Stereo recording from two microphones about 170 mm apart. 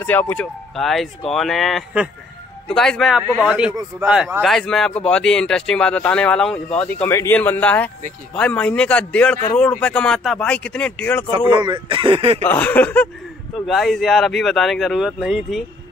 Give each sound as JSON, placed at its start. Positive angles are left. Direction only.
{"t": 0.0, "sound": "speech", "side_deg": 10}
{"t": 11.2, "sound": "speech", "side_deg": -30}
{"t": 12.4, "sound": "speech", "side_deg": 10}